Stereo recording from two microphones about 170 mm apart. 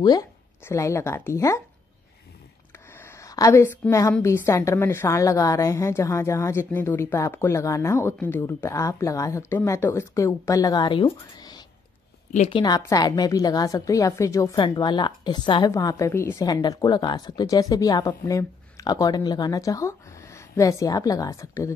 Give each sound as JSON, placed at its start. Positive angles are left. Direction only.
{"t": 0.0, "sound": "speech", "side_deg": 25}
{"t": 2.9, "sound": "a sound", "side_deg": 15}
{"t": 4.1, "sound": "a woman's voice", "side_deg": 15}
{"t": 12.3, "sound": "speech", "side_deg": 45}
{"t": 12.5, "sound": "a woman's voice", "side_deg": 25}